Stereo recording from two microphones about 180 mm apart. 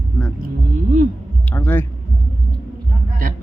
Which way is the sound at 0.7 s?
45° right (ahead or behind).